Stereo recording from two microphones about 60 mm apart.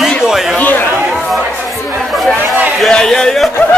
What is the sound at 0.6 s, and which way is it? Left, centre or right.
Speech, left.